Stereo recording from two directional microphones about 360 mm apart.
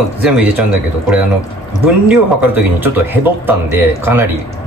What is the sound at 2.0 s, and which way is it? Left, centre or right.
Speech, centre.